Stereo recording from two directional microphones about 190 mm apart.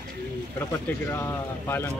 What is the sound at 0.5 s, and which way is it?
Speech, 15° left (ahead or behind).